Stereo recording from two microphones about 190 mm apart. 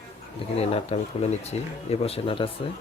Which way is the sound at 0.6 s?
30° left (ahead or behind).